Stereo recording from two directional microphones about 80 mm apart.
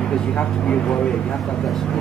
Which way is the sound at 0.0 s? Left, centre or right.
Centre.